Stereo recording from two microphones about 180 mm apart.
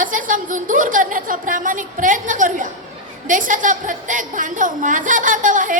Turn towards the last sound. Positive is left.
turn(degrees=-45)  # may be behind; listen again after turning